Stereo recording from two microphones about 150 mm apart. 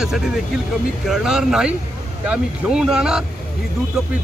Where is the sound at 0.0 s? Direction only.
5° right (ahead or behind).